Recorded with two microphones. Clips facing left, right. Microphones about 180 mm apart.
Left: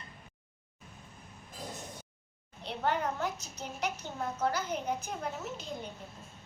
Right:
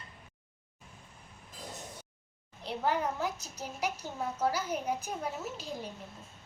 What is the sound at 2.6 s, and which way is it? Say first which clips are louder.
Speech: right 1 dB; 5° right (ahead or behind).